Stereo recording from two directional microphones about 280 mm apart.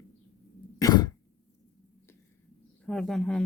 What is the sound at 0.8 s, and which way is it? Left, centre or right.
Throat clearing, centre.